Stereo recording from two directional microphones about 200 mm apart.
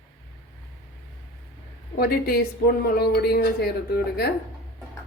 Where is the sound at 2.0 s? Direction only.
50° left (ahead or behind).